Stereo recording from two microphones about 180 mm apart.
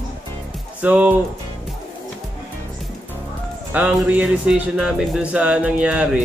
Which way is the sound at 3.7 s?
10° right (ahead or behind).